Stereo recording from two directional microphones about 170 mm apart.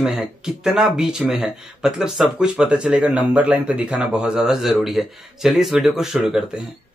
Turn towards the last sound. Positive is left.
turn(degrees=-5)  # may be behind; listen again after turning